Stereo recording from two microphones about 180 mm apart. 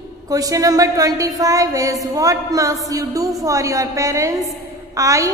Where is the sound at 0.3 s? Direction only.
20° right (ahead or behind).